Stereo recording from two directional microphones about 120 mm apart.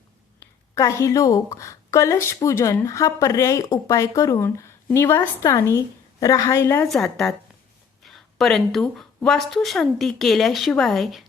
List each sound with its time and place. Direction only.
0.8 s a woman's voice: 25° left (ahead or behind)
6.8 s speech: centre (ahead or behind)